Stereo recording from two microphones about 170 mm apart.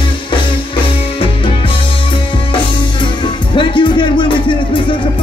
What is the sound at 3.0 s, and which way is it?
Music, 30° left (ahead or behind).